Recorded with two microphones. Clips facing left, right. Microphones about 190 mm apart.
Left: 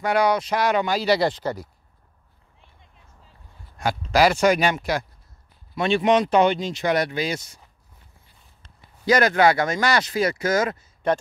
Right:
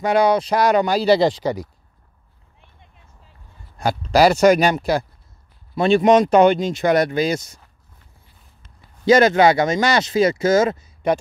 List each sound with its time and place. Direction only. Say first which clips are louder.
0.0 s speech: right 4 dB; 25° right (ahead or behind)
1.3 s speech: right 5 dB; 15° right (ahead or behind)
3.7 s speech: right 4 dB; 35° right (ahead or behind)
9.0 s speech: right 5 dB; 25° right (ahead or behind)